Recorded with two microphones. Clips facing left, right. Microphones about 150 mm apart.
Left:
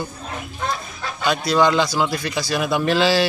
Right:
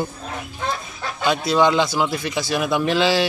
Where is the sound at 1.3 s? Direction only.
20° right (ahead or behind).